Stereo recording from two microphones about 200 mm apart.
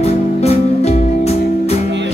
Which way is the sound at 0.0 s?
30° left (ahead or behind).